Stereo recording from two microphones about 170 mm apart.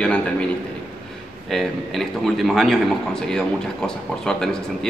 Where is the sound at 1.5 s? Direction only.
Centre (ahead or behind).